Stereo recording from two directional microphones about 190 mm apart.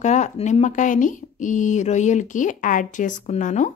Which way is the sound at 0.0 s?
40° left (ahead or behind).